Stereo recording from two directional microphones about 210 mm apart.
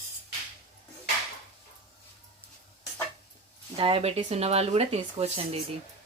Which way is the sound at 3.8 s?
25° right (ahead or behind).